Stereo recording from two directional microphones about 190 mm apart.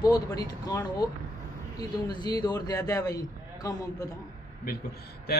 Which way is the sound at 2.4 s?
20° left (ahead or behind).